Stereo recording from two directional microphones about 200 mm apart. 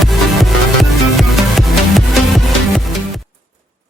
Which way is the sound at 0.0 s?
Centre (ahead or behind).